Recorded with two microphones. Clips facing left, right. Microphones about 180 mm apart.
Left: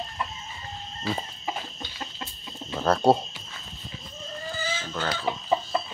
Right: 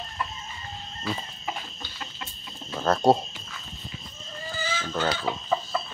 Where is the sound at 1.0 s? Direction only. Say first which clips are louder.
Left 2 dB; 30° left (ahead or behind).